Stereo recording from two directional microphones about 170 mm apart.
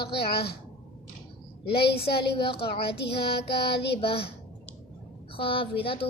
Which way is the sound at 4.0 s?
35° left (ahead or behind).